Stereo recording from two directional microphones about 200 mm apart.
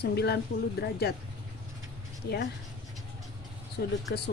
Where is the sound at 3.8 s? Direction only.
55° left (ahead or behind).